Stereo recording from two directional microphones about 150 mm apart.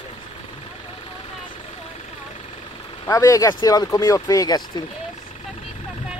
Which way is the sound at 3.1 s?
20° left (ahead or behind).